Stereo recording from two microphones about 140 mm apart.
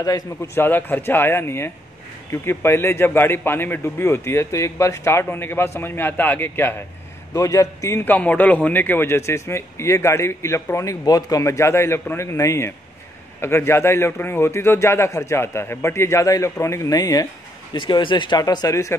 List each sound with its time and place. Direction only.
0.6 s a man's voice: 15° left (ahead or behind)